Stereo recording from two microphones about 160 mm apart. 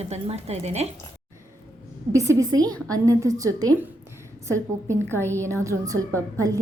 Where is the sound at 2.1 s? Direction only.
20° right (ahead or behind).